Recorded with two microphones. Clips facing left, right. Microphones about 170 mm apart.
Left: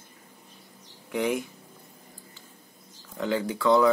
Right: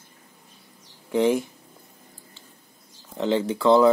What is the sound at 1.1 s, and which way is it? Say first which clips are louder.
Speech: right 6 dB; 30° right (ahead or behind).